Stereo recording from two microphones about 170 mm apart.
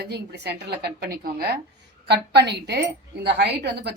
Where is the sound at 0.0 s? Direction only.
75° right (ahead or behind).